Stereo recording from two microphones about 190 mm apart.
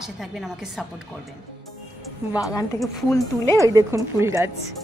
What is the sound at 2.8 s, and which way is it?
Speech, centre (ahead or behind).